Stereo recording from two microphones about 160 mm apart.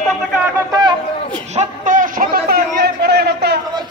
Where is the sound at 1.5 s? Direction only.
50° right (ahead or behind); by 3.6 s 90° right.